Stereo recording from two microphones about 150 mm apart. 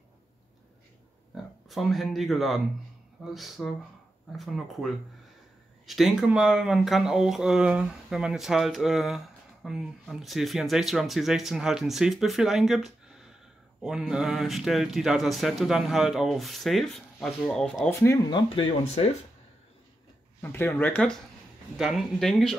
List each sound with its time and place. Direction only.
1.3 s speech: centre (ahead or behind)
17.8 s speech: 15° left (ahead or behind)
18.3 s speech: 35° left (ahead or behind)
20.4 s speech: 15° left (ahead or behind)